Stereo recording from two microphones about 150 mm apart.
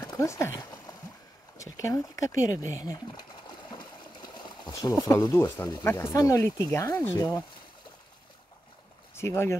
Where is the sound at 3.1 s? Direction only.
30° left (ahead or behind).